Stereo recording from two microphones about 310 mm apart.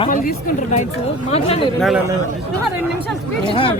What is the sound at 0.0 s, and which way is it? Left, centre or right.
Speech, left.